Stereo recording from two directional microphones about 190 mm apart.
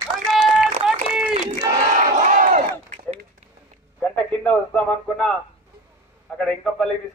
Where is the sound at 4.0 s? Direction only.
5° left (ahead or behind).